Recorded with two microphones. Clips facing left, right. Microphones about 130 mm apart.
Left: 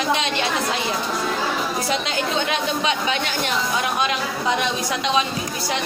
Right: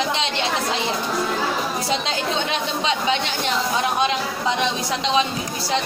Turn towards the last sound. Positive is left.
turn(degrees=-25)  # may be behind; listen again after turning